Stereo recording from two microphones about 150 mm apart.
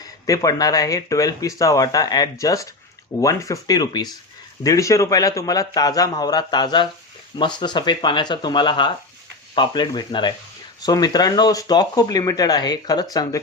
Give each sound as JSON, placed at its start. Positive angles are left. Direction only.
{"t": 0.0, "sound": "speech", "side_deg": 25}